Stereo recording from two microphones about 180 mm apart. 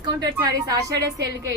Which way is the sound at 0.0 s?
20° right (ahead or behind).